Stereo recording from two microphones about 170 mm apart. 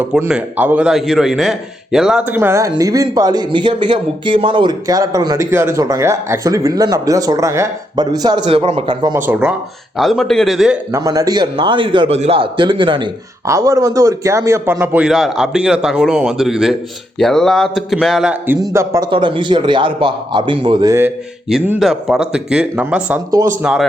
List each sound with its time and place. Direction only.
0.0 s a man's voice: 10° right (ahead or behind); by 9.1 s 25° right (ahead or behind)
9.1 s a man's voice: 10° right (ahead or behind)
10.9 s a man's voice: 20° right (ahead or behind)
21.5 s a man's voice: centre (ahead or behind)